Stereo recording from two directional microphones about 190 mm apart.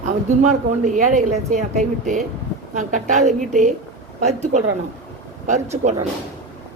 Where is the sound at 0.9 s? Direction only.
40° right (ahead or behind).